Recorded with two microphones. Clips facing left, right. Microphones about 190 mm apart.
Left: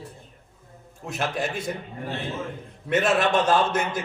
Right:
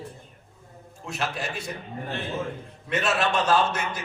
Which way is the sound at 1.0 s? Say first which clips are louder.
Left 3 dB; 50° left (ahead or behind).